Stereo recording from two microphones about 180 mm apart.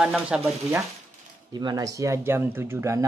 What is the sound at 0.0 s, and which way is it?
Speech, 5° right (ahead or behind).